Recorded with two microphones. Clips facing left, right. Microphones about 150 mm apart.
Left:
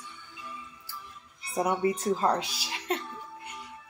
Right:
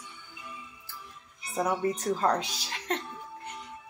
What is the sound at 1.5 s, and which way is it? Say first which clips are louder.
A woman's voice: left 1 dB; 10° left (ahead or behind).